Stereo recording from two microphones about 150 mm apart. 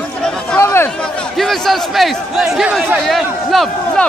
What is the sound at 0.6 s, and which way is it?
Chatter, 20° left (ahead or behind).